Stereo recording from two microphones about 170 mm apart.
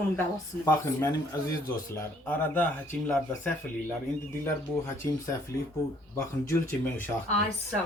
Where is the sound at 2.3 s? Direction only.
10° left (ahead or behind).